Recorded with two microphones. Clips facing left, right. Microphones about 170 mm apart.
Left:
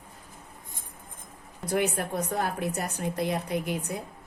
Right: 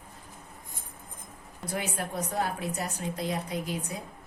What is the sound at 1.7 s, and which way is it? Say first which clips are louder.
A woman's voice: left 6 dB; 60° left (ahead or behind).